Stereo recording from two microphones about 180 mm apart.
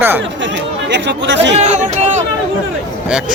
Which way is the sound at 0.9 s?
75° right (ahead or behind).